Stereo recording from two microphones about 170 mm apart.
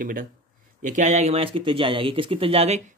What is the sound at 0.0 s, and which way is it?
Speech, 55° right (ahead or behind).